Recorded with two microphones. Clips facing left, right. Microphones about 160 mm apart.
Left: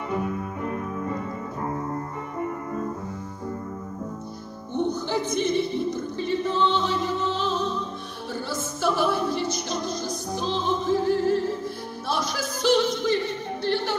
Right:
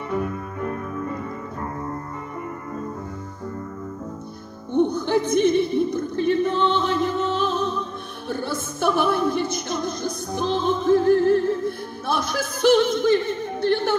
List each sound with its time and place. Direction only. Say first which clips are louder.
4.7 s music: right 6 dB; 55° right (ahead or behind)